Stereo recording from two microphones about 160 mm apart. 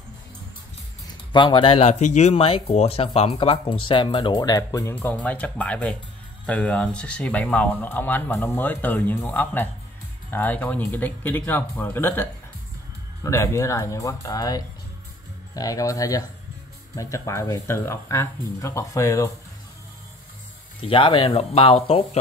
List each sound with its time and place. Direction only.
1.3 s speech: 30° left (ahead or behind)
4.9 s speech: 10° left (ahead or behind)
20.8 s speech: 30° left (ahead or behind)